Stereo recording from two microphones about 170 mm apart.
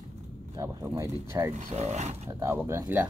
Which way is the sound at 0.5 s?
20° right (ahead or behind).